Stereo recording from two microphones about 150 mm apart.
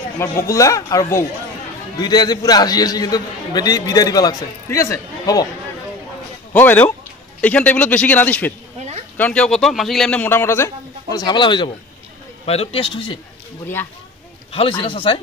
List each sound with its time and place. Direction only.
0.5 s a man's voice: 20° left (ahead or behind)
6.5 s a man's voice: 15° left (ahead or behind); by 13.2 s 35° left (ahead or behind)
14.5 s speech: 35° left (ahead or behind)